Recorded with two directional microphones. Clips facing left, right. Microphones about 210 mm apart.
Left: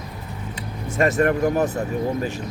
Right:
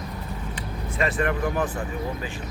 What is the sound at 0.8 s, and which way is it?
Speech, 45° left (ahead or behind).